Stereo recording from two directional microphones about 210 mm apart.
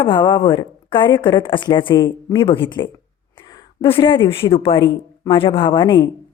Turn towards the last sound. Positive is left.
turn(degrees=25)  # may be behind; listen again after turning